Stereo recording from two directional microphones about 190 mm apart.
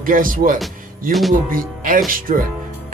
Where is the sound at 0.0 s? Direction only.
45° right (ahead or behind).